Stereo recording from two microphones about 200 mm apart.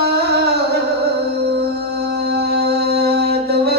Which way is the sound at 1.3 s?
55° right (ahead or behind).